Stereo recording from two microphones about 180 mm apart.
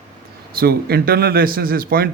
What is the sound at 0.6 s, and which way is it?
Speech, 60° right (ahead or behind).